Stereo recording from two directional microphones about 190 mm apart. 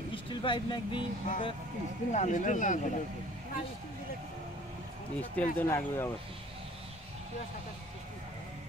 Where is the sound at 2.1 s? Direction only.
40° left (ahead or behind).